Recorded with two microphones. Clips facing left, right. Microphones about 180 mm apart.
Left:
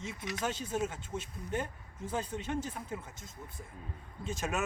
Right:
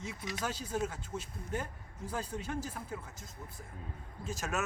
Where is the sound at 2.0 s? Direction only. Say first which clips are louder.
Left 3 dB; 25° left (ahead or behind).